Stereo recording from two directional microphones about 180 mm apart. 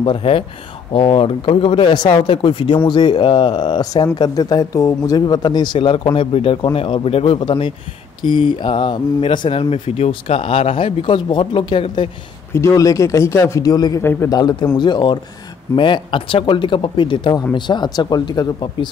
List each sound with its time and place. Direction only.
0.0 s speech: 30° left (ahead or behind)
12.5 s speech: 15° left (ahead or behind)